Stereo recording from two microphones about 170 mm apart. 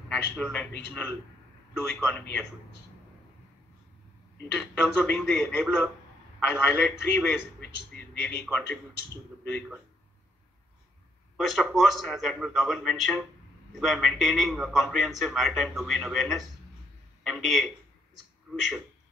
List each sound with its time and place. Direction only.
0.1 s a man's voice: 10° left (ahead or behind)
4.4 s a man's voice: 10° left (ahead or behind)
11.3 s a man's voice: centre (ahead or behind)